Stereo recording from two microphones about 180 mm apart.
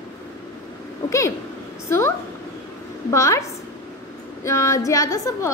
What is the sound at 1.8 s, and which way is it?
A woman's voice, 15° left (ahead or behind).